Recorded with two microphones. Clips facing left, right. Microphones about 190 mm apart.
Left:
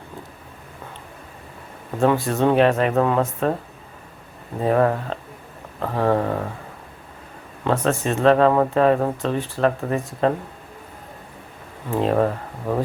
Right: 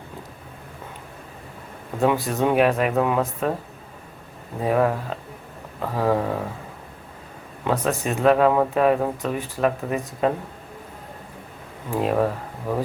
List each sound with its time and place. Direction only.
2.0 s speech: 15° right (ahead or behind)
4.6 s speech: 10° right (ahead or behind)
7.6 s speech: 15° right (ahead or behind)
11.9 s speech: 5° right (ahead or behind)